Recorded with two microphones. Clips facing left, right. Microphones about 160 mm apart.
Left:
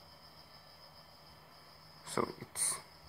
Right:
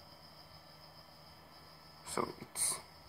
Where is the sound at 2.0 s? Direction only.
5° right (ahead or behind).